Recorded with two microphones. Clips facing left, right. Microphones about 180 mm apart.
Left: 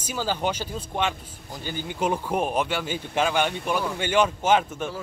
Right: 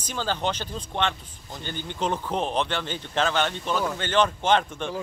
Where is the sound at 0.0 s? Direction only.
10° left (ahead or behind).